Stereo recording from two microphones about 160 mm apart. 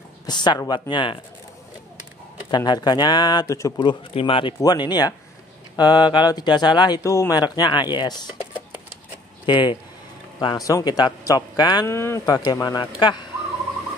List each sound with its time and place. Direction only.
0.3 s speech: 25° left (ahead or behind)
2.5 s speech: 25° left (ahead or behind)